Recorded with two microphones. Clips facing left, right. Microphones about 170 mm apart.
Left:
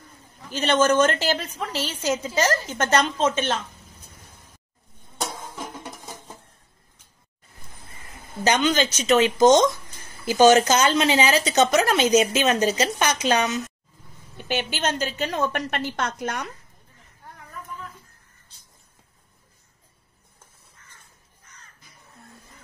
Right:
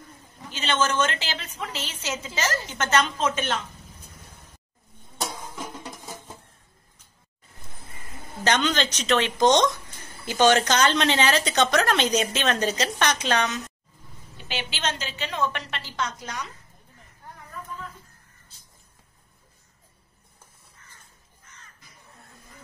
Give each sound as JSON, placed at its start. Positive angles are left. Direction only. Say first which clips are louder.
{"t": 0.5, "sound": "a woman's voice", "louder": "left 6 dB", "side_deg": 40}
{"t": 5.2, "sound": "music", "louder": "left 1 dB", "side_deg": 10}
{"t": 8.5, "sound": "a woman's voice", "louder": "left 3 dB", "side_deg": 10}
{"t": 14.3, "sound": "a woman's voice", "louder": "left 7 dB", "side_deg": 50}